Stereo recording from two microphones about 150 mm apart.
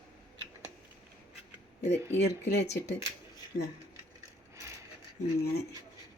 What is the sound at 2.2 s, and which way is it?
Speech, 90° left.